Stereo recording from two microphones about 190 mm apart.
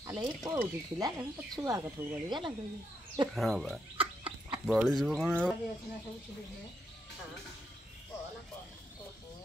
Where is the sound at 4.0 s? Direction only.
30° right (ahead or behind).